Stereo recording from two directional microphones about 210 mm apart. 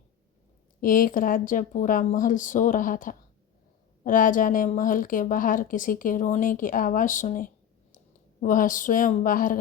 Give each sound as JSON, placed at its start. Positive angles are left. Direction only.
{"t": 0.8, "sound": "a woman's voice", "side_deg": 40}